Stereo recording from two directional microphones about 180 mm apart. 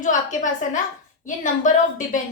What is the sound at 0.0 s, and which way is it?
A woman's voice, 45° left (ahead or behind).